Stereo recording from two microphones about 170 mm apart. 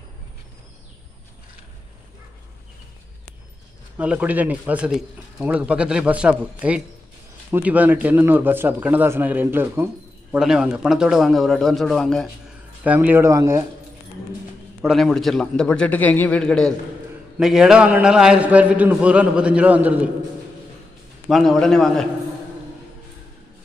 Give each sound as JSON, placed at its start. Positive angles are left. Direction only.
{"t": 4.0, "sound": "a man's voice", "side_deg": -10}
{"t": 12.8, "sound": "speech", "side_deg": -10}
{"t": 14.8, "sound": "a man's voice", "side_deg": 0}
{"t": 21.3, "sound": "a man's voice", "side_deg": 0}